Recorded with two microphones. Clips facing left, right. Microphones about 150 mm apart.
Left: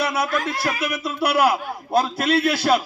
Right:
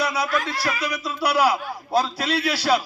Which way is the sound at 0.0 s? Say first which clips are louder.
Left 1 dB; 55° left (ahead or behind).